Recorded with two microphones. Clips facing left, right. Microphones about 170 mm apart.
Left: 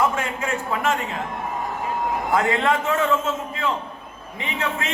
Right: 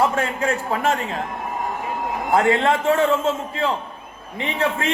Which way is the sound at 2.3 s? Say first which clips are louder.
Right 4 dB; 30° right (ahead or behind).